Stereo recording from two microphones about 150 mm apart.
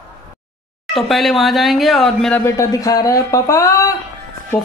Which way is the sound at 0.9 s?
Centre (ahead or behind).